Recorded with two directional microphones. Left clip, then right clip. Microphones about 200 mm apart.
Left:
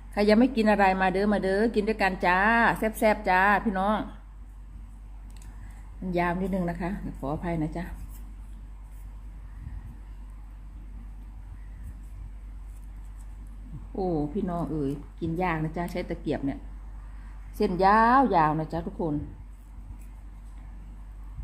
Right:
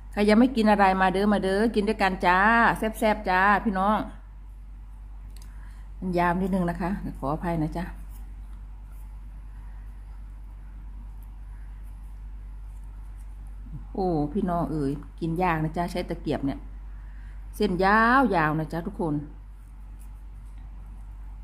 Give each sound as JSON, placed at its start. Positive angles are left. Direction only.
{"t": 0.1, "sound": "a woman's voice", "side_deg": -10}
{"t": 6.1, "sound": "a woman's voice", "side_deg": -10}
{"t": 13.9, "sound": "a woman's voice", "side_deg": -20}
{"t": 17.6, "sound": "a woman's voice", "side_deg": -10}